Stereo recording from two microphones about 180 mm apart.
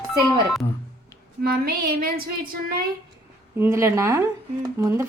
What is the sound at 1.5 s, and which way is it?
Speech, 55° right (ahead or behind).